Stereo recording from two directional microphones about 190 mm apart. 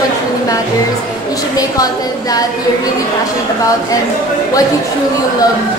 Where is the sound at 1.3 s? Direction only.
20° left (ahead or behind).